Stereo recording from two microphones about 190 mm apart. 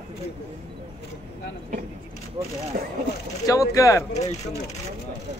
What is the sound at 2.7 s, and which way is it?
Speech, 45° right (ahead or behind).